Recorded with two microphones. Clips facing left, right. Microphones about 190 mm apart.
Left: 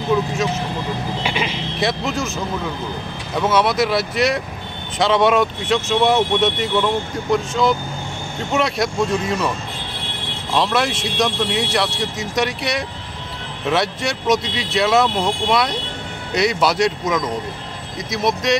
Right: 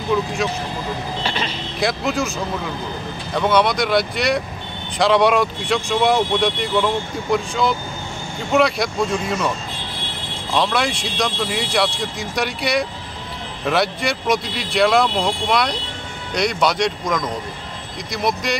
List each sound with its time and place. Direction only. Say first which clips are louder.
1.2 s vehicle: left 2 dB; 10° left (ahead or behind)
3.3 s speech: even; 5° left (ahead or behind)
10.5 s speech: left 1 dB; centre (ahead or behind)